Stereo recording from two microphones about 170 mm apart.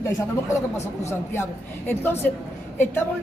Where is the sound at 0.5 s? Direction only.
15° left (ahead or behind).